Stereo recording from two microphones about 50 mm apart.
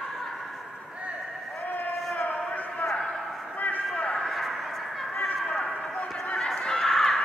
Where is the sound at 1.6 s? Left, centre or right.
Left.